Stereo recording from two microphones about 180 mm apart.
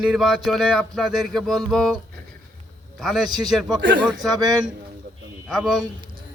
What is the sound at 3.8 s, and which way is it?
Speech, 80° right.